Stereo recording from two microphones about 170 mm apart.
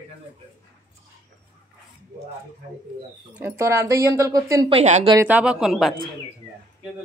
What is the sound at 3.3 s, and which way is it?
Speech, 15° right (ahead or behind).